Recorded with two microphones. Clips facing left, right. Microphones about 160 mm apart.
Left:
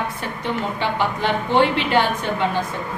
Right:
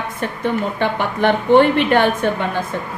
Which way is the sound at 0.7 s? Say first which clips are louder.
Right 3 dB; 55° right (ahead or behind).